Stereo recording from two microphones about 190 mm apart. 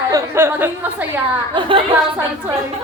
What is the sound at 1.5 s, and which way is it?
Speech, 25° right (ahead or behind).